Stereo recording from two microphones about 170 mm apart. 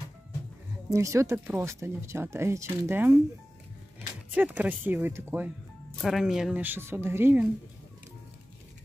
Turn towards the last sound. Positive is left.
turn(degrees=-10)  # may be behind; listen again after turning